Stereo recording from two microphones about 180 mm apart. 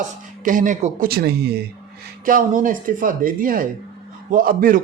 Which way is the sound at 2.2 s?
45° right (ahead or behind).